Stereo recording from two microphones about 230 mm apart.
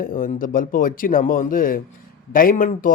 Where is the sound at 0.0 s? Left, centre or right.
Left.